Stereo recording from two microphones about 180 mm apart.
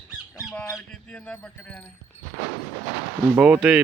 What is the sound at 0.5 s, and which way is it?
Speech, 10° left (ahead or behind).